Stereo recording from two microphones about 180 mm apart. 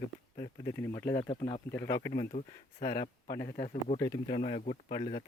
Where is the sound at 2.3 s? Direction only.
45° left (ahead or behind).